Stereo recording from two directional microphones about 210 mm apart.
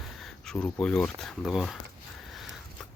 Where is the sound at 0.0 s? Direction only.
Centre (ahead or behind).